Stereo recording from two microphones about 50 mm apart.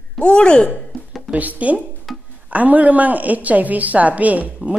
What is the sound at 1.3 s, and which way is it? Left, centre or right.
A woman's voice, right.